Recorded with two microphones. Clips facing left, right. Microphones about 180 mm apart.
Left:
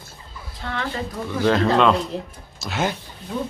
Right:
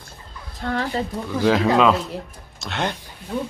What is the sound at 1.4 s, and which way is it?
Speech, 10° right (ahead or behind).